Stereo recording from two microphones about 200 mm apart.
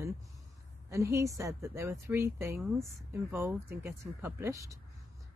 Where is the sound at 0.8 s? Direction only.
15° right (ahead or behind).